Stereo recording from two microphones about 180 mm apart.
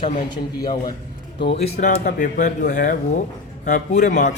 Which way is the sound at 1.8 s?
45° left (ahead or behind).